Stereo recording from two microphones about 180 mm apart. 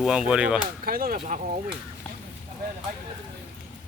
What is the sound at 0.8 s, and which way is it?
Speech, 55° right (ahead or behind).